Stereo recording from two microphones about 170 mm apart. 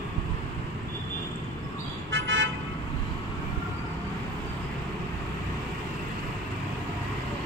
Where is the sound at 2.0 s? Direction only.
90° right.